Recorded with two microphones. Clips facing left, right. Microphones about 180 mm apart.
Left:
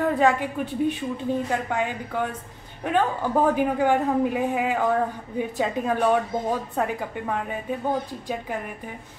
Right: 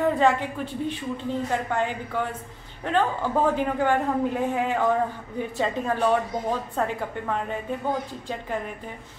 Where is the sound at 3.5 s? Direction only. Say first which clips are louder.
Left 2 dB; 10° left (ahead or behind).